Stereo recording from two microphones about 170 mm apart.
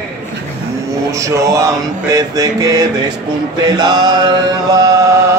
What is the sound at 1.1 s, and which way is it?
Mantra, 20° right (ahead or behind).